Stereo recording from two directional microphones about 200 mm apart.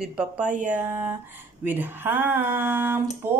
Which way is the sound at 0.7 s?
10° right (ahead or behind).